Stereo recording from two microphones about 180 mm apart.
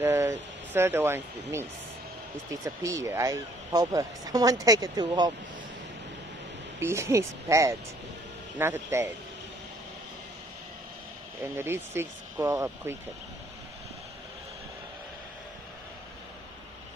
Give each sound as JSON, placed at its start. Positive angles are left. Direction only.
{"t": 0.0, "sound": "speech", "side_deg": -15}
{"t": 6.8, "sound": "speech", "side_deg": -15}
{"t": 11.5, "sound": "speech", "side_deg": -15}